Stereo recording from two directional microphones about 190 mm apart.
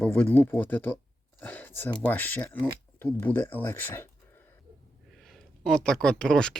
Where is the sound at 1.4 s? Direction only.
10° left (ahead or behind).